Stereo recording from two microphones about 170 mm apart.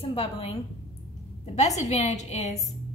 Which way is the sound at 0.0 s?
35° left (ahead or behind).